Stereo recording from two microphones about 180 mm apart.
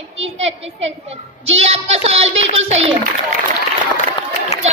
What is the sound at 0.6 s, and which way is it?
Speech, 90° right.